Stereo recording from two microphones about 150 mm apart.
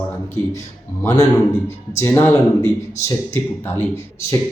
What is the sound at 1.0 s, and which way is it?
A man's voice, 20° left (ahead or behind).